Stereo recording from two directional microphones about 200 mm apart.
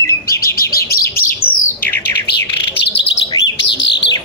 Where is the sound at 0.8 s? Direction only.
50° left (ahead or behind).